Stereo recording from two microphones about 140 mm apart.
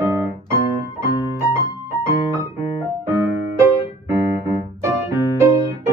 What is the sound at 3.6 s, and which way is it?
Keyboard, 20° right (ahead or behind).